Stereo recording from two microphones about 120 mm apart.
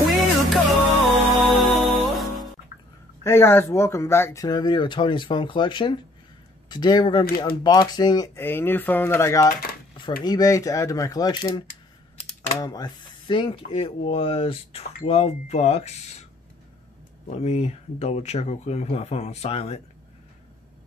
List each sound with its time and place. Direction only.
0.1 s music: centre (ahead or behind)
3.3 s speech: 20° left (ahead or behind)
8.4 s speech: 20° left (ahead or behind)
9.9 s speech: 35° left (ahead or behind)
12.6 s speech: 35° left (ahead or behind); by 16.3 s 65° left (ahead or behind)
17.3 s speech: 60° left (ahead or behind)